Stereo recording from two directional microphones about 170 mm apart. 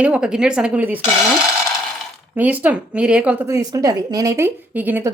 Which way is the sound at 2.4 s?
10° right (ahead or behind).